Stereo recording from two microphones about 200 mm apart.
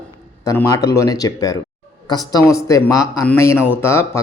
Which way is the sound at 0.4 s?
15° left (ahead or behind).